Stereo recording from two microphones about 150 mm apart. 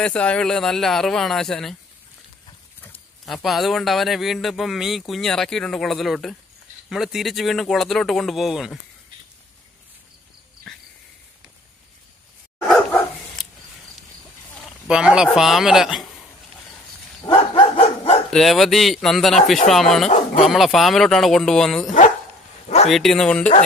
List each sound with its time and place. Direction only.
0.0 s speech: 5° left (ahead or behind)
3.3 s speech: centre (ahead or behind)
14.9 s speech: 5° right (ahead or behind)
17.3 s dog: 35° left (ahead or behind)
18.3 s speech: centre (ahead or behind)
20.1 s speech: 40° left (ahead or behind)
20.4 s speech: centre (ahead or behind)